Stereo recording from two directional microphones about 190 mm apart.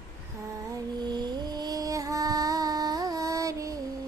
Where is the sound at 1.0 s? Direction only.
25° right (ahead or behind).